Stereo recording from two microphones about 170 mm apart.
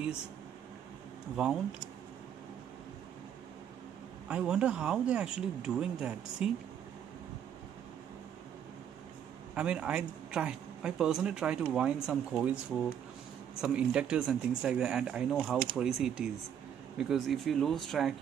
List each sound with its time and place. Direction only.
1.3 s speech: 5° right (ahead or behind)
4.3 s speech: 5° right (ahead or behind)
9.6 s speech: 5° right (ahead or behind)
13.6 s speech: 5° right (ahead or behind)